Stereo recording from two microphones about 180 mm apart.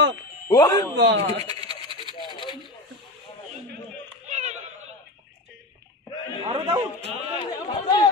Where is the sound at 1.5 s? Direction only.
25° left (ahead or behind).